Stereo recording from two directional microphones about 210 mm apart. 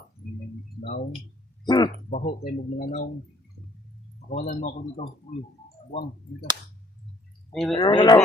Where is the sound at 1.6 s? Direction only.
20° left (ahead or behind).